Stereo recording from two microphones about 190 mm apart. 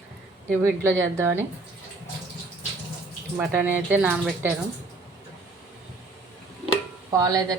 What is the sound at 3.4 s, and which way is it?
Speech, 10° right (ahead or behind).